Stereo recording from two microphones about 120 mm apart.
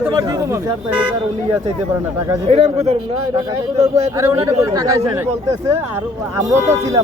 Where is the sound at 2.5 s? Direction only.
65° right (ahead or behind).